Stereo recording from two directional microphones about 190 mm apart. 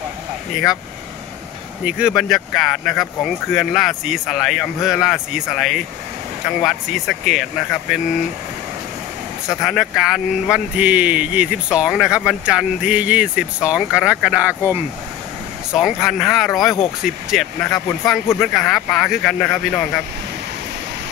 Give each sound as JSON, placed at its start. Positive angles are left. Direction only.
{"t": 1.9, "sound": "speech", "side_deg": -5}
{"t": 9.6, "sound": "speech", "side_deg": 0}